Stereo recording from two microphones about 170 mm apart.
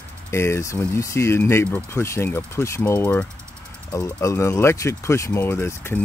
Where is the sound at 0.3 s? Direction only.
15° left (ahead or behind).